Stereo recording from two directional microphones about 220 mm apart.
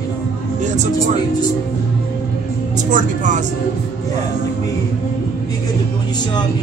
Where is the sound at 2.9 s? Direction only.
35° right (ahead or behind).